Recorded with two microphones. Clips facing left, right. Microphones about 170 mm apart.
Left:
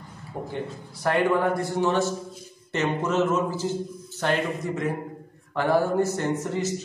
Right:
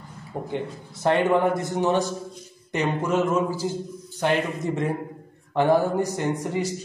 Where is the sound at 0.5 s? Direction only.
25° right (ahead or behind).